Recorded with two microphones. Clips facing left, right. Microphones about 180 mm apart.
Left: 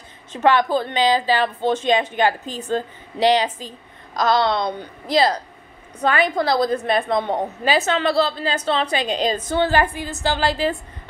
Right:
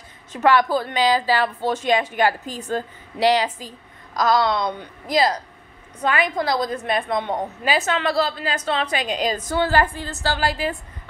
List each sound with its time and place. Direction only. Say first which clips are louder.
0.3 s a woman's voice: even; 20° left (ahead or behind)